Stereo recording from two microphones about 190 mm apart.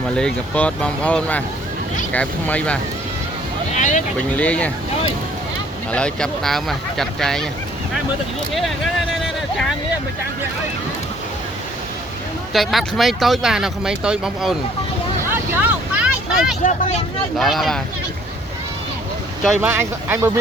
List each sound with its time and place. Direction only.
0.2 s speech: 5° left (ahead or behind)
3.8 s speech: 40° left (ahead or behind)
4.4 s speech: 5° left (ahead or behind)
5.9 s speech: 5° left (ahead or behind)
8.5 s vehicle: centre (ahead or behind)
12.5 s speech: centre (ahead or behind)
15.3 s vehicle: 10° right (ahead or behind)
17.3 s speech: centre (ahead or behind)
19.5 s speech: 10° right (ahead or behind)